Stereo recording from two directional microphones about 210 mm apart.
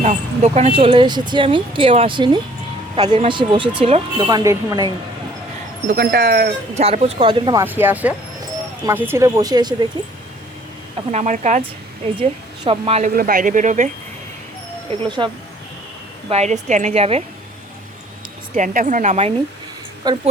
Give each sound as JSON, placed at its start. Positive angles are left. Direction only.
{"t": 0.0, "sound": "a woman's voice", "side_deg": -30}
{"t": 5.9, "sound": "speech", "side_deg": -50}
{"t": 6.7, "sound": "speech", "side_deg": -30}
{"t": 7.6, "sound": "speech", "side_deg": -10}
{"t": 11.1, "sound": "a woman's voice", "side_deg": -35}
{"t": 13.1, "sound": "a woman's voice", "side_deg": -40}
{"t": 15.0, "sound": "speech", "side_deg": -20}
{"t": 16.3, "sound": "a woman's voice", "side_deg": -35}
{"t": 18.5, "sound": "a woman's voice", "side_deg": -40}
{"t": 20.1, "sound": "speech", "side_deg": -20}